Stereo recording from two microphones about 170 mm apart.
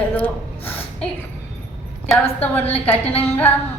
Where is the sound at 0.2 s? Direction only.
10° left (ahead or behind).